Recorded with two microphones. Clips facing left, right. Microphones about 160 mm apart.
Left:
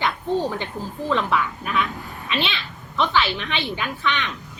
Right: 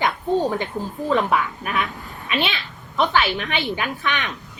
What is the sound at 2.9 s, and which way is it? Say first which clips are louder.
A woman's voice: right 2 dB; 45° right (ahead or behind).